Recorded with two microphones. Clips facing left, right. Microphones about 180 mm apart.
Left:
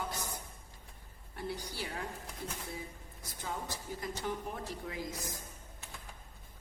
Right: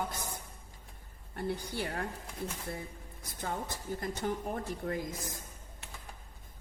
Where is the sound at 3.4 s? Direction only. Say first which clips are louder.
Right 3 dB; 55° right (ahead or behind).